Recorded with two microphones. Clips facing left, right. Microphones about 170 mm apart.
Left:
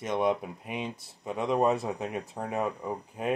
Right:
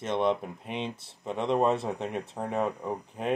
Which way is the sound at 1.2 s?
10° left (ahead or behind).